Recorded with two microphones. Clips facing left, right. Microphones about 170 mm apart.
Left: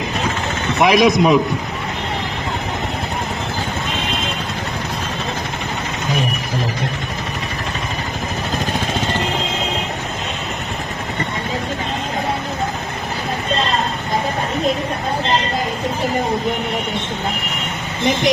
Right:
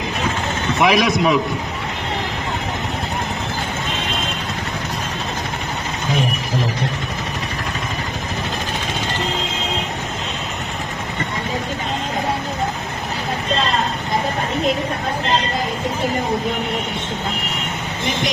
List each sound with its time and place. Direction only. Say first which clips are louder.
0.8 s a man's voice: left 4 dB; 45° left (ahead or behind)